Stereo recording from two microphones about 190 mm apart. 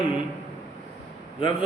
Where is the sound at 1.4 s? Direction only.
30° left (ahead or behind).